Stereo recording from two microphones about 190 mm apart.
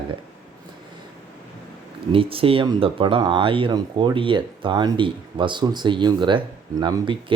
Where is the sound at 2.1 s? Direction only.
30° right (ahead or behind).